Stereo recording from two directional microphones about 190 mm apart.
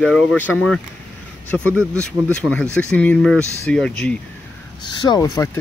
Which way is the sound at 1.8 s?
15° right (ahead or behind).